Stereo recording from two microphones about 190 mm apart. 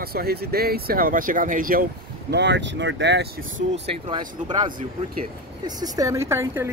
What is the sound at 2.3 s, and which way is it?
Speech, 65° right (ahead or behind).